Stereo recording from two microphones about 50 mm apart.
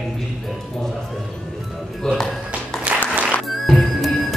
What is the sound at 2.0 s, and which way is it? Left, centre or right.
Speech, centre.